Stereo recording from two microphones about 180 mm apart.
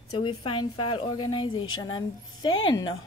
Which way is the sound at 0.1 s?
25° left (ahead or behind).